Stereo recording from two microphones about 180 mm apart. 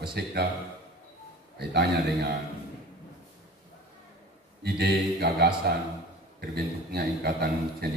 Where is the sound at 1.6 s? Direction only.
60° right (ahead or behind).